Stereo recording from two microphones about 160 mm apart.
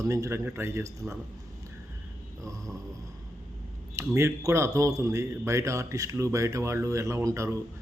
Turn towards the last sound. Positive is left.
turn(degrees=-15)  # may be behind; listen again after turning